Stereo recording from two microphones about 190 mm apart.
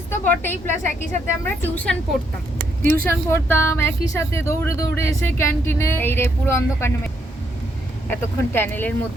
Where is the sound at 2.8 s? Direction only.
10° left (ahead or behind).